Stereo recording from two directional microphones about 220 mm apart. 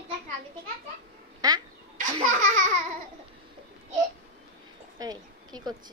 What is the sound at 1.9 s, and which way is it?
Laughter, 35° right (ahead or behind).